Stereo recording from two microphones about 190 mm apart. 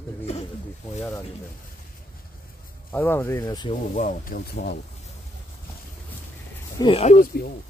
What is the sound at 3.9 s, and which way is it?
Speech, 40° left (ahead or behind).